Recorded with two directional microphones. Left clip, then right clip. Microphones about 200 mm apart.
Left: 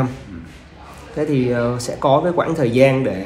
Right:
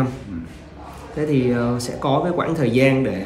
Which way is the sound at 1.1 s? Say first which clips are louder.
Left 1 dB; 10° left (ahead or behind).